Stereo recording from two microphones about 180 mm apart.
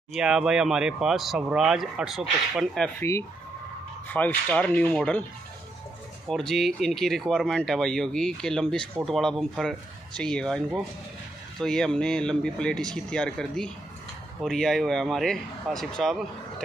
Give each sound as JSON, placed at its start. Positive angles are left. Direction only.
{"t": 0.1, "sound": "speech", "side_deg": -5}
{"t": 3.0, "sound": "speech", "side_deg": 15}
{"t": 6.2, "sound": "speech", "side_deg": 0}